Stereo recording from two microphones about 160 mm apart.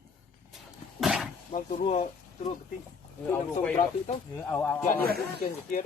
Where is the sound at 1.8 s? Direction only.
45° left (ahead or behind).